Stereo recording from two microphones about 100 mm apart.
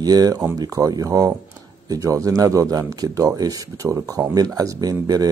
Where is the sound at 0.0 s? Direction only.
40° right (ahead or behind).